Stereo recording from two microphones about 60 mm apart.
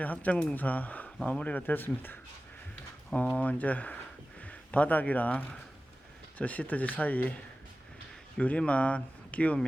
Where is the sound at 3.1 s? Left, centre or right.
Left.